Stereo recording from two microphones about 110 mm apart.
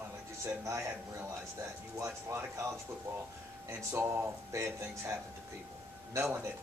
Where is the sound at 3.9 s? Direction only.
25° right (ahead or behind).